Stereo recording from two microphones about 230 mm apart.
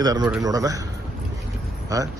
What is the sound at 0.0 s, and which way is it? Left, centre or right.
Speech, centre.